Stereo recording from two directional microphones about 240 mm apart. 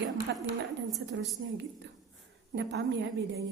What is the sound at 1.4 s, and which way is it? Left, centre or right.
A woman's voice, right.